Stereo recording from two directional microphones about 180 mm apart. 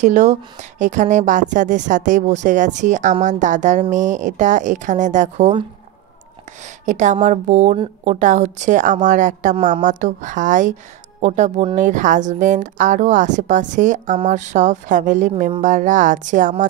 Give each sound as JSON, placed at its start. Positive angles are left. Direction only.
{"t": 0.0, "sound": "a woman's voice", "side_deg": -40}
{"t": 6.9, "sound": "a woman's voice", "side_deg": -45}